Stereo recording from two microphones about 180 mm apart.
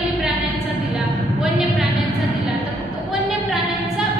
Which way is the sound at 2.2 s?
Centre (ahead or behind).